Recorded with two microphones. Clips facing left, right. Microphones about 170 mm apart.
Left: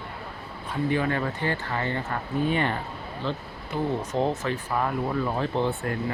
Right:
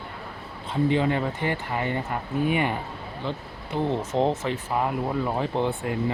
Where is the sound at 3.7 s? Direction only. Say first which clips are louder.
Right 2 dB; 25° right (ahead or behind).